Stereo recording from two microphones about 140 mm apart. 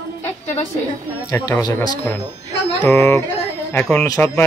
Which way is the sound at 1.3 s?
25° left (ahead or behind).